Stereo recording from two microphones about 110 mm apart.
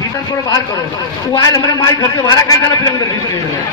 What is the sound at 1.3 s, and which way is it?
A man's voice, 35° left (ahead or behind).